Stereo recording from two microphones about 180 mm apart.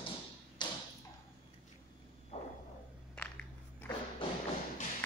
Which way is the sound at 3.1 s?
5° left (ahead or behind).